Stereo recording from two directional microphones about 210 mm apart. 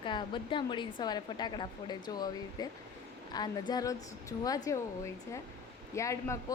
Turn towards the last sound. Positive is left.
turn(degrees=15)  # may be behind; listen again after turning